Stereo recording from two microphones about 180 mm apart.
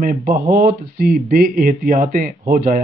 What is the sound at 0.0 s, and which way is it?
Speech, 45° right (ahead or behind).